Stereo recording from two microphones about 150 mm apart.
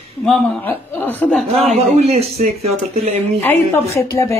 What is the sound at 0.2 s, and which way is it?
Speech, 10° left (ahead or behind).